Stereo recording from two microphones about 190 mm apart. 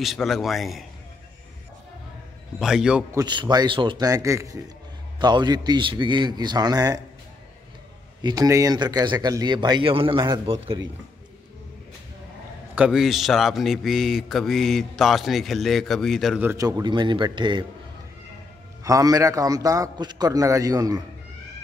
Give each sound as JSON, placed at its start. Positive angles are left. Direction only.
{"t": 0.0, "sound": "a man's voice", "side_deg": 0}
{"t": 2.6, "sound": "a man's voice", "side_deg": -5}
{"t": 3.1, "sound": "a man's voice", "side_deg": -20}
{"t": 8.2, "sound": "a man's voice", "side_deg": -20}
{"t": 12.7, "sound": "a man's voice", "side_deg": -5}
{"t": 16.4, "sound": "a man's voice", "side_deg": -20}
{"t": 18.9, "sound": "a man's voice", "side_deg": -20}